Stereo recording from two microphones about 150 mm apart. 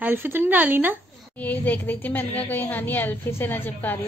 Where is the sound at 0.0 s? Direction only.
15° right (ahead or behind).